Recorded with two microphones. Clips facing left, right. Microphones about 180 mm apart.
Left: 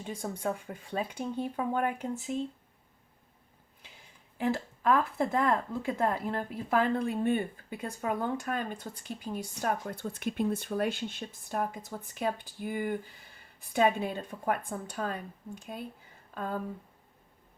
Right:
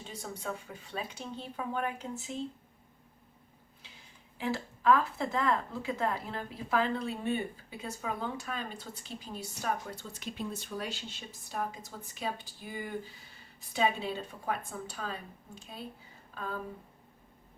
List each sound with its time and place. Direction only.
0.0 s a woman's voice: 55° left (ahead or behind)
4.4 s a woman's voice: 50° left (ahead or behind)